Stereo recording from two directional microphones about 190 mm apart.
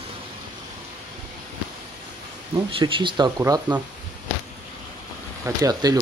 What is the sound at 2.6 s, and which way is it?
Speech, 25° right (ahead or behind).